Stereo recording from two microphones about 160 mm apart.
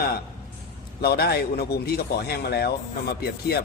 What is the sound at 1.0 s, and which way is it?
A man's voice, 80° left.